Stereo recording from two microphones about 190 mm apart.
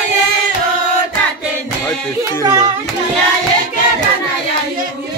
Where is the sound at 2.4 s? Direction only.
20° right (ahead or behind).